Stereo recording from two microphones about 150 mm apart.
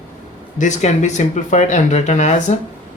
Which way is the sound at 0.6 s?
50° left (ahead or behind).